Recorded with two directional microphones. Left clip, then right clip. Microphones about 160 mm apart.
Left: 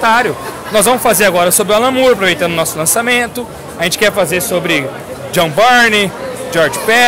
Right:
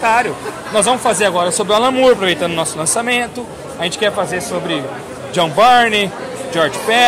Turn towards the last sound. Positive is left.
turn(degrees=20)  # may be behind; listen again after turning